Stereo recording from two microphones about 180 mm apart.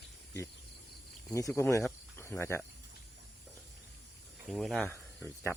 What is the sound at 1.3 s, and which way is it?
Speech, 20° left (ahead or behind).